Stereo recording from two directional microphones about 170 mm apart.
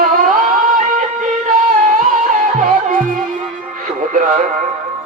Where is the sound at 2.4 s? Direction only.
50° right (ahead or behind).